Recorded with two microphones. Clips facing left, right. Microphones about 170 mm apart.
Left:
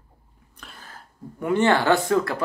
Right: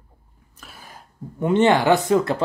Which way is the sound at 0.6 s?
5° right (ahead or behind).